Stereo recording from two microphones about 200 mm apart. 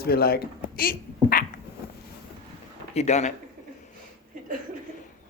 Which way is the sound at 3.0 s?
35° left (ahead or behind).